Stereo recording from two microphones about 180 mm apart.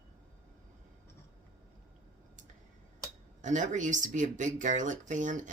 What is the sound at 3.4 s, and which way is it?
Speech, 45° right (ahead or behind).